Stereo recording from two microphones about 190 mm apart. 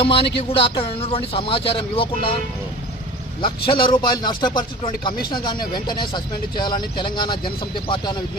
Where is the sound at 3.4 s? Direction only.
25° left (ahead or behind).